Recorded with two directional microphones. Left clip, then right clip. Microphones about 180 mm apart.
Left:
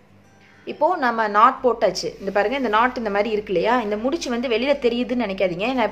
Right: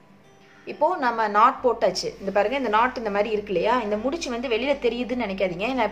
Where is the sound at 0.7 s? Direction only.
20° left (ahead or behind).